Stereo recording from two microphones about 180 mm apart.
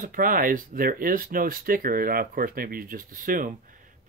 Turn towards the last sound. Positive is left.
turn(degrees=-50)  # may be behind; listen again after turning